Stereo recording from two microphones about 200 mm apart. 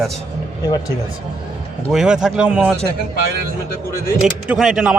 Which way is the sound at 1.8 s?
5° right (ahead or behind).